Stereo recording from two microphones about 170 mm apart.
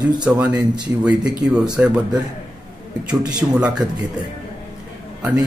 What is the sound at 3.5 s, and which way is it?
Speech, 5° right (ahead or behind).